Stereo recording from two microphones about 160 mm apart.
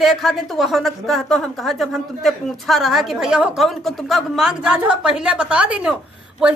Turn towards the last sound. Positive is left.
turn(degrees=-5)  # may be behind; listen again after turning